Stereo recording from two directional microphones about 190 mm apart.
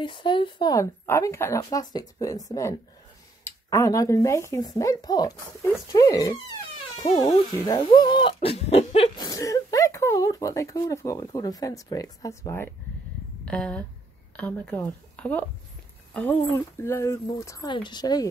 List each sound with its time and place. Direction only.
0.0 s speech: 25° left (ahead or behind)
3.7 s speech: 15° left (ahead or behind)
7.1 s speech: 35° left (ahead or behind)
7.6 s speech: 20° left (ahead or behind)
9.2 s a woman's voice: 20° left (ahead or behind)